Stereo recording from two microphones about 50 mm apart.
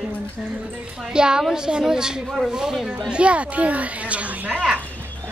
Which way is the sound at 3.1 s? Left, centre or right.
Right.